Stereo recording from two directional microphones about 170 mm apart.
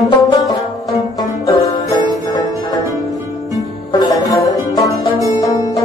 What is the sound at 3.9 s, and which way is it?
Music, 25° left (ahead or behind).